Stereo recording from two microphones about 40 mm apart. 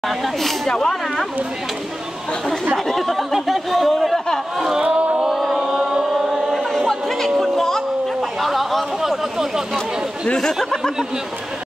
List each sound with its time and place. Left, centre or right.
0.7 s speech: centre
2.9 s speech: centre
3.3 s a sound: centre
4.8 s music: right
5.2 s music: centre
6.5 s a sound: centre
7.2 s music: centre
8.4 s a sound: centre
10.2 s speech: centre